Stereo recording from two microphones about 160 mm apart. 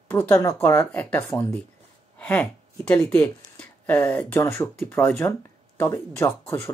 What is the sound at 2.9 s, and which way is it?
Speech, 10° left (ahead or behind).